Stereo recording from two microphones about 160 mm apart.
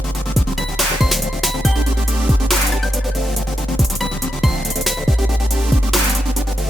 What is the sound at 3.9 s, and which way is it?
Music, centre (ahead or behind).